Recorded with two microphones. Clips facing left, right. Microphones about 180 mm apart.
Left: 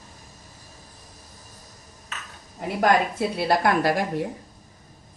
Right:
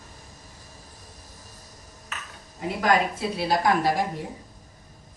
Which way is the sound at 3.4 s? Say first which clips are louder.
Left 1 dB; 60° left (ahead or behind).